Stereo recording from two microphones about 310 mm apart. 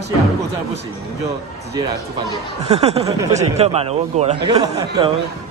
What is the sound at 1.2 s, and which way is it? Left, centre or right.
Speech, centre.